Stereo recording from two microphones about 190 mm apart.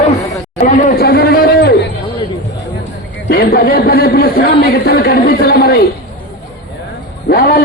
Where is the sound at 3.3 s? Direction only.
55° left (ahead or behind).